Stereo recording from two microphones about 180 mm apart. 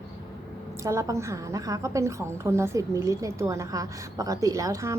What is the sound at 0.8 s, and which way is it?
A woman's voice, 15° right (ahead or behind).